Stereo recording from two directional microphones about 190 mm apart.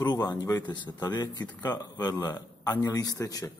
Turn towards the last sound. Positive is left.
turn(degrees=15)  # may be behind; listen again after turning